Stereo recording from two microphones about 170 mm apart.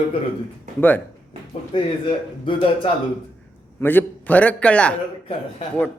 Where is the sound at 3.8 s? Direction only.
10° left (ahead or behind).